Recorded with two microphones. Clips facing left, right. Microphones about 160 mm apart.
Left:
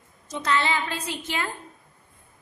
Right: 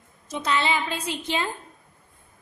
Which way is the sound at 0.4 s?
15° right (ahead or behind).